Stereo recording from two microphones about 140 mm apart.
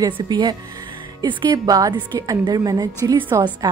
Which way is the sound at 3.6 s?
25° right (ahead or behind).